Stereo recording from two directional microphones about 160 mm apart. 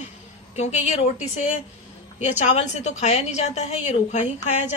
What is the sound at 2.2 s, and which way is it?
A woman's voice, 45° left (ahead or behind).